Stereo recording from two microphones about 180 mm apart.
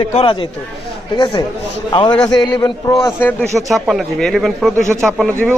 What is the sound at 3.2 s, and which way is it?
A man's voice, 10° left (ahead or behind).